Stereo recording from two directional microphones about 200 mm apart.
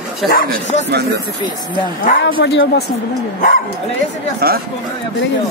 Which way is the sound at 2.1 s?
50° left (ahead or behind).